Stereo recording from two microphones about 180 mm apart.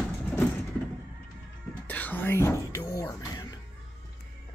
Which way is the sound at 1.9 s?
10° left (ahead or behind).